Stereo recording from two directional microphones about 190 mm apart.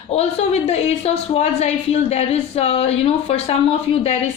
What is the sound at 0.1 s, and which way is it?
A woman's voice, 35° left (ahead or behind).